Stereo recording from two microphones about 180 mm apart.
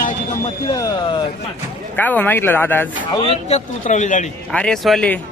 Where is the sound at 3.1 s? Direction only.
35° left (ahead or behind).